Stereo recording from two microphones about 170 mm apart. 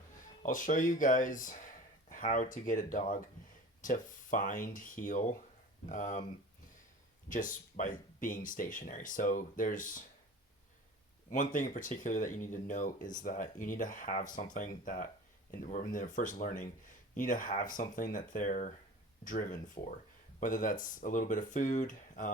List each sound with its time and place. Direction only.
0.4 s speech: 50° left (ahead or behind)
7.3 s speech: 50° left (ahead or behind)
11.3 s speech: 50° left (ahead or behind)
15.5 s speech: 50° left (ahead or behind)